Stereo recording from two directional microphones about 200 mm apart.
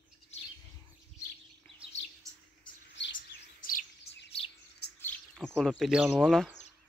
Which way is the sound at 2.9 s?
65° left (ahead or behind).